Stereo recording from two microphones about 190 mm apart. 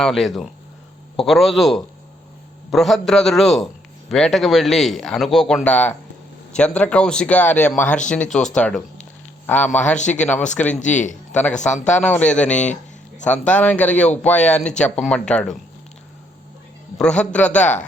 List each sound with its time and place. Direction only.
0.0 s speech: centre (ahead or behind)
9.8 s a man's voice: 40° left (ahead or behind)
10.2 s speech: 5° left (ahead or behind)
10.8 s a man's voice: 40° left (ahead or behind)
12.0 s speech: 5° left (ahead or behind)
17.0 s speech: 5° left (ahead or behind)